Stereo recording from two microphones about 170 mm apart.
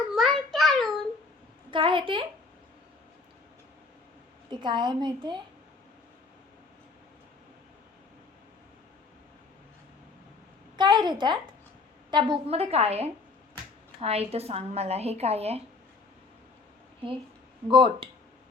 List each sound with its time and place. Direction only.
0.1 s child singing: centre (ahead or behind)
1.7 s a sound: 30° right (ahead or behind)
4.4 s a woman's voice: 25° right (ahead or behind)
10.8 s a sound: 25° right (ahead or behind)
12.1 s speech: 30° right (ahead or behind)
17.7 s a woman's voice: 30° right (ahead or behind)